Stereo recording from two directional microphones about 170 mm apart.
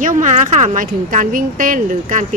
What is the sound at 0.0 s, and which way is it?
A woman's voice, 45° right (ahead or behind).